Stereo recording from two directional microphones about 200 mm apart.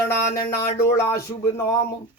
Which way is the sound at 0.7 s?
15° left (ahead or behind).